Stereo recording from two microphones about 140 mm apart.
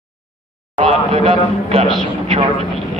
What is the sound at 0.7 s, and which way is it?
A man's voice, 45° right (ahead or behind).